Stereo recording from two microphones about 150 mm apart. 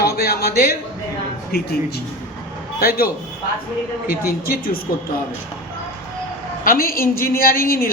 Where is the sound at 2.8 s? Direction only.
90° left.